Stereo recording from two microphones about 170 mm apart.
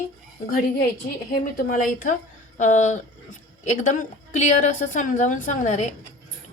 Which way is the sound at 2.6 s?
45° left (ahead or behind).